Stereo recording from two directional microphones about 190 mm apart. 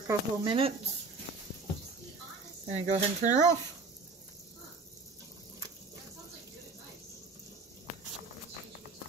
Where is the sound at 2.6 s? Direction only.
40° right (ahead or behind).